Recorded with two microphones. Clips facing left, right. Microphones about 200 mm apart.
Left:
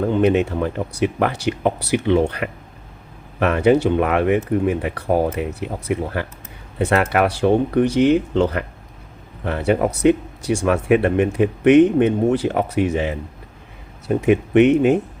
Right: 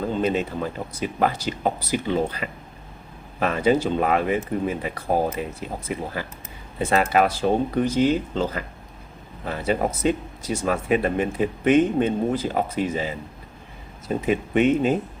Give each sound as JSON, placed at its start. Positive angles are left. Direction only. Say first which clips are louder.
{"t": 0.0, "sound": "speech", "louder": "left 7 dB", "side_deg": 65}